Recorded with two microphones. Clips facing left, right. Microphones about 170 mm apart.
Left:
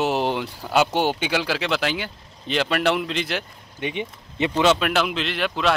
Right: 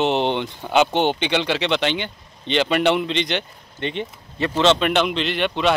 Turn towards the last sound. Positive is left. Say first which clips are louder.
# right 3 dB
turn(degrees=0)  # may be behind; listen again after turning